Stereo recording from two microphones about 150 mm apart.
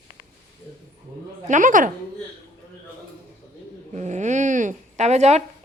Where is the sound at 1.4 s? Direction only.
60° right (ahead or behind).